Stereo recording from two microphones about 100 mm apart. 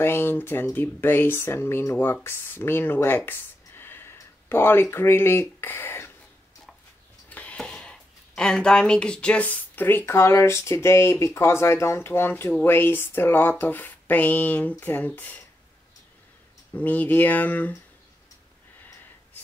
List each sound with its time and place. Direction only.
0.0 s speech: 20° left (ahead or behind)
7.2 s speech: 15° left (ahead or behind)
16.7 s speech: 15° left (ahead or behind)